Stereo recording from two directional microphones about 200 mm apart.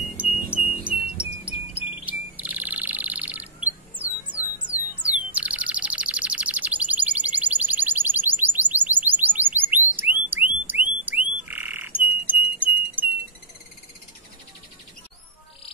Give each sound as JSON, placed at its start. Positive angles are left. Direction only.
{"t": 0.2, "sound": "wind chime", "side_deg": -5}
{"t": 5.3, "sound": "bird", "side_deg": -5}
{"t": 9.9, "sound": "frog", "side_deg": -10}